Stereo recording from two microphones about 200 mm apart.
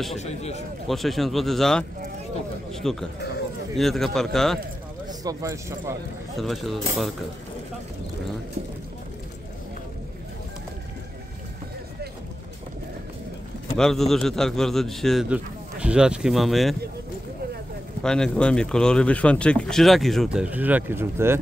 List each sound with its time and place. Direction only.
0.2 s a man's voice: 35° left (ahead or behind)
0.8 s speech: centre (ahead or behind)
5.0 s speech: 20° right (ahead or behind)
6.3 s speech: centre (ahead or behind)
13.7 s speech: centre (ahead or behind)
18.0 s speech: 5° left (ahead or behind); by 21.4 s 10° right (ahead or behind)